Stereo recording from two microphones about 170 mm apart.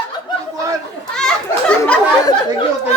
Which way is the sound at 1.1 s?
5° left (ahead or behind).